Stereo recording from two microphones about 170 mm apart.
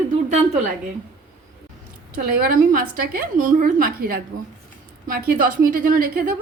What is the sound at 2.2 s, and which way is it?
A woman's voice, 60° right (ahead or behind).